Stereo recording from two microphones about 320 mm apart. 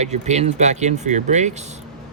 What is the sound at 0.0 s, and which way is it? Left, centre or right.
Speech, right.